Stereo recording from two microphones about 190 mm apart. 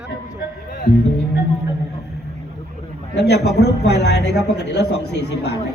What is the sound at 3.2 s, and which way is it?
A man's voice, 60° left (ahead or behind).